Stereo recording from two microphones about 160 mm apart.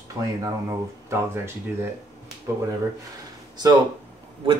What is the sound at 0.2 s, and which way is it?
Speech, 20° right (ahead or behind).